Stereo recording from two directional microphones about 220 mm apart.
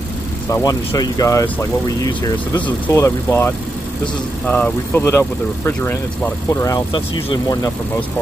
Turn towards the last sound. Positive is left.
turn(degrees=20)  # may be behind; listen again after turning